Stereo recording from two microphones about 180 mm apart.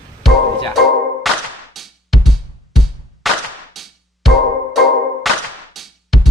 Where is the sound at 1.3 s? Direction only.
Centre (ahead or behind).